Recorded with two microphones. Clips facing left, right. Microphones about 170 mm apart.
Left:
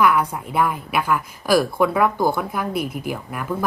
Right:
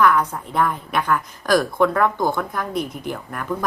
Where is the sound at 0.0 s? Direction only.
10° left (ahead or behind).